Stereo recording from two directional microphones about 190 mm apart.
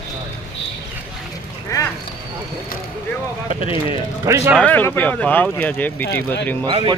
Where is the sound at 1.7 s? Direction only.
15° left (ahead or behind).